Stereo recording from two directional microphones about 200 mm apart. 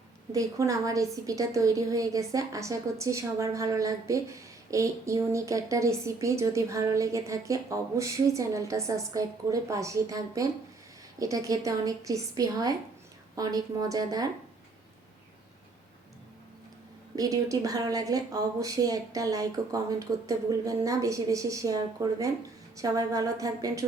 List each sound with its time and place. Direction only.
0.3 s a woman's voice: 15° right (ahead or behind)
17.2 s a woman's voice: 15° right (ahead or behind)